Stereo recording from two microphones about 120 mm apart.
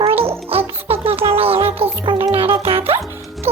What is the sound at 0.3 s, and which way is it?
Music, 55° right (ahead or behind).